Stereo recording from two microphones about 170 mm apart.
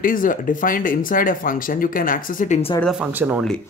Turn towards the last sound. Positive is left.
turn(degrees=-10)  # may be behind; listen again after turning